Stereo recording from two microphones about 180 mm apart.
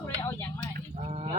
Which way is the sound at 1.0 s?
35° right (ahead or behind).